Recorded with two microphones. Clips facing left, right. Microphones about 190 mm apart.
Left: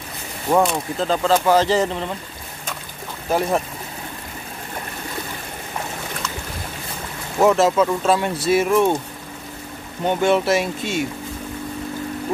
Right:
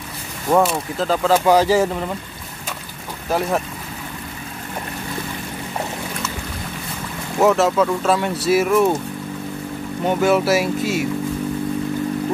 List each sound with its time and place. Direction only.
0.6 s speech: 5° right (ahead or behind)
3.3 s speech: centre (ahead or behind)
7.3 s speech: centre (ahead or behind)
10.0 s speech: 5° right (ahead or behind)